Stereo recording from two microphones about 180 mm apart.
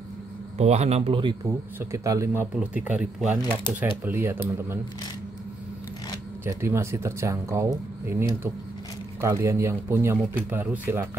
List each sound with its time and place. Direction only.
0.6 s speech: 35° right (ahead or behind)
1.4 s speech: 15° right (ahead or behind)
6.4 s speech: 15° right (ahead or behind)